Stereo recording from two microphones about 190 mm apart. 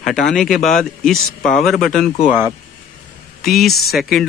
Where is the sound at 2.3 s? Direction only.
10° right (ahead or behind).